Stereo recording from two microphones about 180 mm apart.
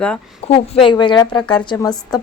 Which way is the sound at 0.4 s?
35° left (ahead or behind).